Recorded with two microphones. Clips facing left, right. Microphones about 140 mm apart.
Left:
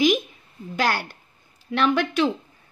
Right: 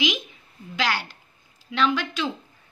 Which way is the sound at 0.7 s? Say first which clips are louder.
Left 3 dB; 50° left (ahead or behind).